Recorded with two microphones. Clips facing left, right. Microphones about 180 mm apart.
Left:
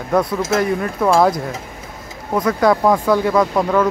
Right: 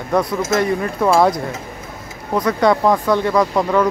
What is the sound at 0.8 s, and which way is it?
Speech, centre (ahead or behind).